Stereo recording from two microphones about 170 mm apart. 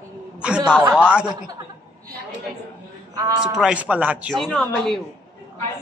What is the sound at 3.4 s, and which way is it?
Speech, 5° right (ahead or behind).